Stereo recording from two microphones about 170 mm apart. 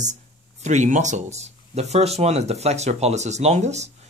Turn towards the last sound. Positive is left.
turn(degrees=-40)  # may be behind; listen again after turning